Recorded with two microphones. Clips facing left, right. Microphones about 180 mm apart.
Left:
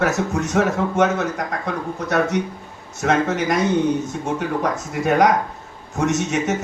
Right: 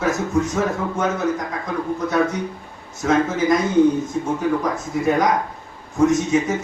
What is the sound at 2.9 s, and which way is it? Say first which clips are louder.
Speech: right 1 dB; 75° left (ahead or behind).